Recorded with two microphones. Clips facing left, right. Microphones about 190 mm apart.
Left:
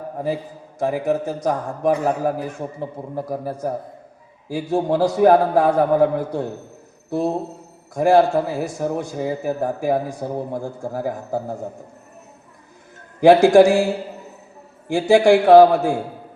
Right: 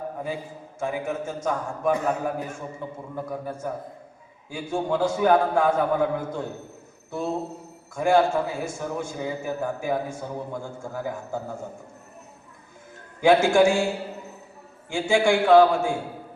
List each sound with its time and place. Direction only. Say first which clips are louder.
0.8 s a man's voice: left 8 dB; 35° left (ahead or behind)
13.2 s a man's voice: left 7 dB; 35° left (ahead or behind)
14.9 s a man's voice: left 7 dB; 35° left (ahead or behind)